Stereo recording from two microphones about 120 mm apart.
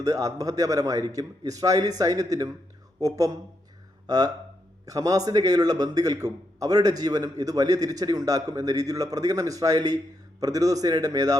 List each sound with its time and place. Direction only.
0.0 s a man's voice: 30° right (ahead or behind)